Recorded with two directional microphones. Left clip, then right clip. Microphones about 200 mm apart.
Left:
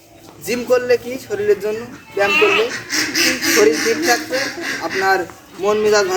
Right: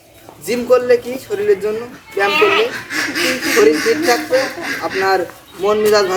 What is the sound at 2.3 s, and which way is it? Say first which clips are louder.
Speech: right 1 dB; 25° right (ahead or behind).